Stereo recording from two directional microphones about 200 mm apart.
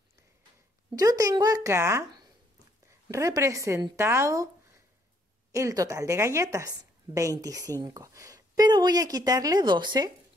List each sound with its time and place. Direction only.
0.9 s a woman's voice: 20° right (ahead or behind)
5.5 s a woman's voice: 15° right (ahead or behind)